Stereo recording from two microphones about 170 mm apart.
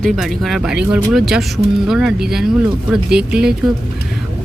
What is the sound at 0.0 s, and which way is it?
Speech, centre (ahead or behind).